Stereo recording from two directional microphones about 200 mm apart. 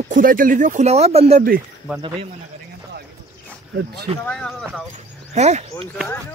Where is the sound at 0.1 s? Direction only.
45° right (ahead or behind).